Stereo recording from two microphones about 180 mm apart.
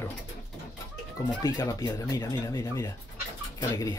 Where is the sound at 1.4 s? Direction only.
20° left (ahead or behind).